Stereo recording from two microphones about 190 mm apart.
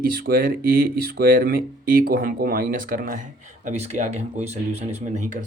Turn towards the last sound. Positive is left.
turn(degrees=-40)  # may be behind; listen again after turning